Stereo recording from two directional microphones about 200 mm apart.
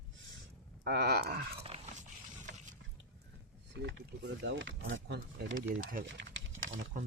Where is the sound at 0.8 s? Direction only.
55° right (ahead or behind).